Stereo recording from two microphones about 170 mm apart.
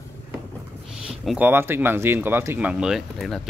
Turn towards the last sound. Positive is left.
turn(degrees=0)  # may be behind; listen again after turning